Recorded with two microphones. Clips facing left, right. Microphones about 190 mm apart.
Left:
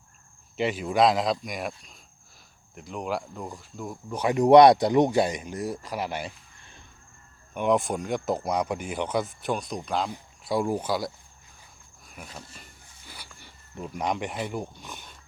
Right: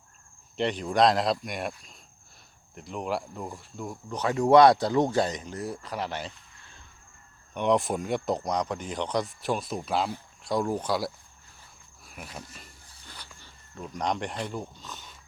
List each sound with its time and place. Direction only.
0.5 s speech: 5° left (ahead or behind)
4.2 s speech: 15° left (ahead or behind)
7.5 s speech: 5° left (ahead or behind)
10.4 s speech: 5° left (ahead or behind)
12.0 s a sound: centre (ahead or behind)
13.8 s speech: 5° left (ahead or behind)